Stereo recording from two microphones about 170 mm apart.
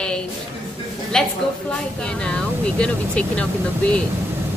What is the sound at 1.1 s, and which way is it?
Speech, 5° left (ahead or behind).